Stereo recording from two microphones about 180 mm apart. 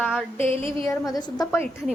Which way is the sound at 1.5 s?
10° left (ahead or behind).